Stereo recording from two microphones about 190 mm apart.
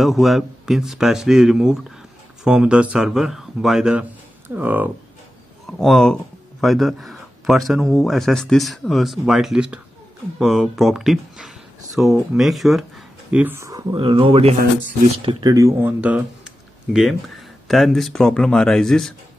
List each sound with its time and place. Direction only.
0.0 s speech: centre (ahead or behind)
5.7 s speech: centre (ahead or behind)